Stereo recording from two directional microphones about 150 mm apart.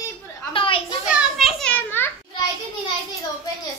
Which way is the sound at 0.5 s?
35° left (ahead or behind).